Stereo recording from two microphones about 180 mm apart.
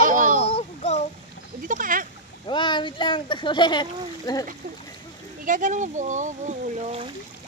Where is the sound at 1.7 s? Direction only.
50° right (ahead or behind).